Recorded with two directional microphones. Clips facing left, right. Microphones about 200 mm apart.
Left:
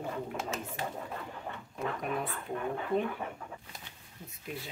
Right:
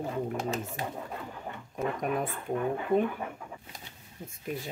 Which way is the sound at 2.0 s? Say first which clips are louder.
Right 5 dB; 45° right (ahead or behind).